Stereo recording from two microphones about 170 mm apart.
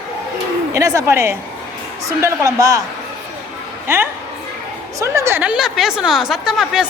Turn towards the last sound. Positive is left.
turn(degrees=-5)  # may be behind; listen again after turning